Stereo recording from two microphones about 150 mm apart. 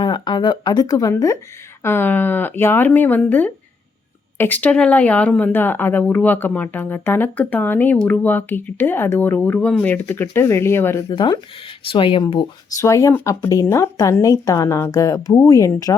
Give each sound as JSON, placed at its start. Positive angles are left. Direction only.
{"t": 0.0, "sound": "speech", "side_deg": 30}
{"t": 11.1, "sound": "speech", "side_deg": 30}
{"t": 12.8, "sound": "a woman's voice", "side_deg": 20}